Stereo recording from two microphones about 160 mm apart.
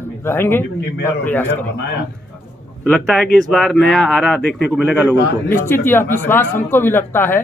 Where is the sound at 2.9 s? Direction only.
5° left (ahead or behind).